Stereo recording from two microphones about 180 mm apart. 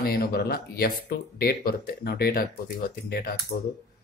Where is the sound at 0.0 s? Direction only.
60° left (ahead or behind).